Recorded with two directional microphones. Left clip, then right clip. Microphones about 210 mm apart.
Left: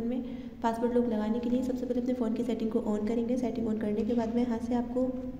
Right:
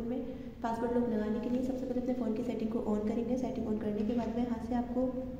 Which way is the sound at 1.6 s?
45° left (ahead or behind).